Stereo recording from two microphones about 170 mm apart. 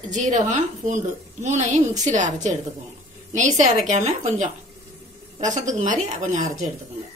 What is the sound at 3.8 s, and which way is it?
A woman's voice, 45° right (ahead or behind).